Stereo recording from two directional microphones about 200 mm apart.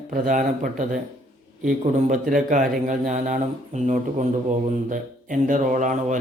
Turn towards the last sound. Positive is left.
turn(degrees=-40)  # may be behind; listen again after turning